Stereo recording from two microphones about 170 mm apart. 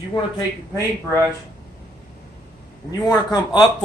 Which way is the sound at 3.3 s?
25° left (ahead or behind).